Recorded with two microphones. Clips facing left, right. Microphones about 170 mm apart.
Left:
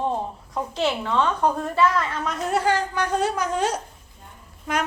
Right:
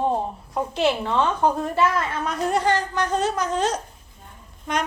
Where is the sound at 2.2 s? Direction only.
5° left (ahead or behind).